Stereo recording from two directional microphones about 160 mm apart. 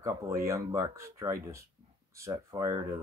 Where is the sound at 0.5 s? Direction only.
20° right (ahead or behind).